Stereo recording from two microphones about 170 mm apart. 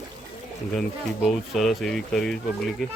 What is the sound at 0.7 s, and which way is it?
Speech, 5° left (ahead or behind).